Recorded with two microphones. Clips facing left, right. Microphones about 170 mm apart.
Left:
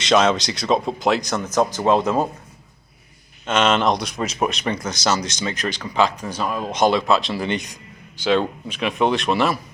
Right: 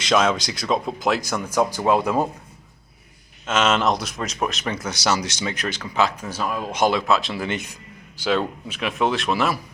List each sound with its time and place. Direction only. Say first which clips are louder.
0.0 s speech: left 3 dB; centre (ahead or behind)
0.7 s speech: left 3 dB; 25° left (ahead or behind)
1.0 s speech: left 2 dB; 5° right (ahead or behind)
3.4 s speech: left 2 dB; 5° right (ahead or behind)